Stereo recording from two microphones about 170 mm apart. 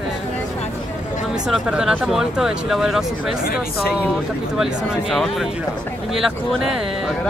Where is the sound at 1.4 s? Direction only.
5° right (ahead or behind).